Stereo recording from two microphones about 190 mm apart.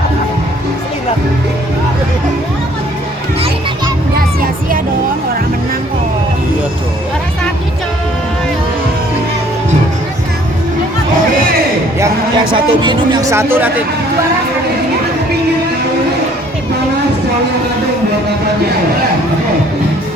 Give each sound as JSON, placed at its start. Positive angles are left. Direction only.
{"t": 12.5, "sound": "speech", "side_deg": -25}